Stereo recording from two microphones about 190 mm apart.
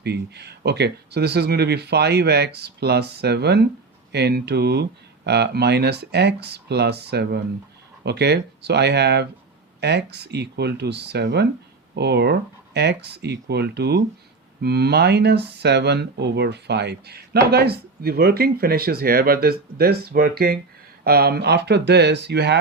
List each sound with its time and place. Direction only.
0.0 s speech: 60° right (ahead or behind)